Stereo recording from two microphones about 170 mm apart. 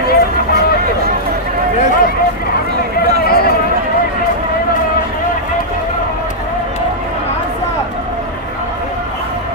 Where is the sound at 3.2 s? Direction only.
65° left (ahead or behind).